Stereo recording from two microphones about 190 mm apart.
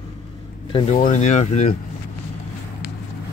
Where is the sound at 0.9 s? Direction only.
40° left (ahead or behind).